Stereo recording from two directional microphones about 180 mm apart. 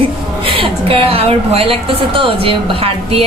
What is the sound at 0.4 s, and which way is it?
A woman's voice, 30° right (ahead or behind).